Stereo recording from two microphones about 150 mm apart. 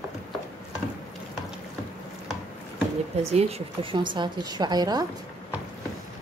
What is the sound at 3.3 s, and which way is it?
Speech, 45° right (ahead or behind).